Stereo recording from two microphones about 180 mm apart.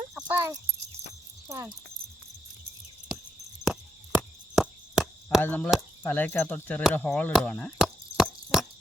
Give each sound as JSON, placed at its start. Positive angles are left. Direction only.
{"t": 0.1, "sound": "cricket", "side_deg": -10}
{"t": 1.5, "sound": "speech", "side_deg": -15}
{"t": 3.6, "sound": "chop", "side_deg": -5}
{"t": 5.4, "sound": "speech", "side_deg": 10}
{"t": 6.9, "sound": "chop", "side_deg": 5}